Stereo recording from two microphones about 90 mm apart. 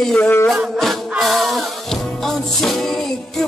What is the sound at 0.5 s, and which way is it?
Music, centre (ahead or behind).